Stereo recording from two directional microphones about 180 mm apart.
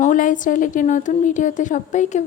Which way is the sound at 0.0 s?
45° left (ahead or behind).